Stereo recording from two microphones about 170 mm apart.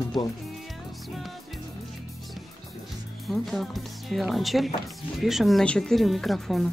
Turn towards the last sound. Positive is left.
turn(degrees=0)  # may be behind; listen again after turning